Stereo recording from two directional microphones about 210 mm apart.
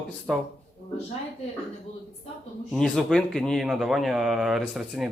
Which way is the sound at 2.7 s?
5° left (ahead or behind).